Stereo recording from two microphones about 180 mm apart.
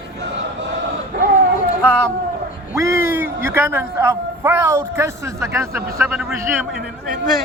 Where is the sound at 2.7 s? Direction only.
15° right (ahead or behind).